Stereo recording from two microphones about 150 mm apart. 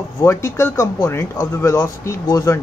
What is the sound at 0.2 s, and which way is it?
Speech, 15° left (ahead or behind).